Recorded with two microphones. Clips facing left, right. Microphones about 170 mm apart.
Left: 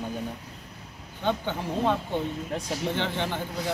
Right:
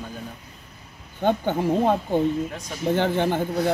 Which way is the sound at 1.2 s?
45° right (ahead or behind).